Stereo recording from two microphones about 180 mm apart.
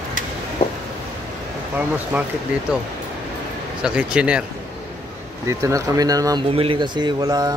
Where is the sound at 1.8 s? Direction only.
10° right (ahead or behind).